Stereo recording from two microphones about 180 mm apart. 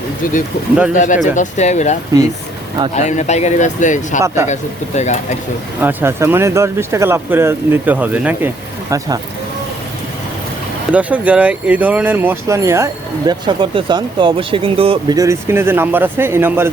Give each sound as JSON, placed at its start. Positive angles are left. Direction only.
{"t": 0.9, "sound": "speech", "side_deg": 45}
{"t": 4.4, "sound": "speech", "side_deg": -15}
{"t": 4.9, "sound": "speech", "side_deg": 40}
{"t": 5.8, "sound": "speech", "side_deg": -10}
{"t": 8.9, "sound": "speech", "side_deg": -20}
{"t": 10.9, "sound": "speech", "side_deg": -10}
{"t": 15.1, "sound": "speech", "side_deg": -15}